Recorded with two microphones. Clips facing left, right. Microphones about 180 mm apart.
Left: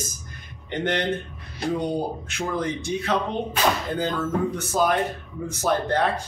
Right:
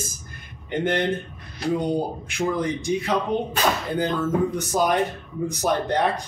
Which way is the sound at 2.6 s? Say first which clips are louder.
Right 2 dB; 15° right (ahead or behind).